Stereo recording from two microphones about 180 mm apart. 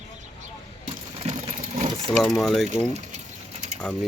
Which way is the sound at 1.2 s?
45° right (ahead or behind).